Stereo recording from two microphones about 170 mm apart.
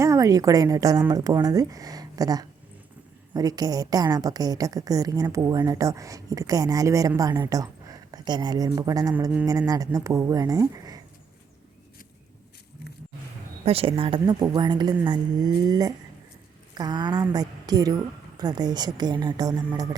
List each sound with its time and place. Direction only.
0.0 s a woman's voice: 20° right (ahead or behind)
13.7 s a woman's voice: 35° right (ahead or behind)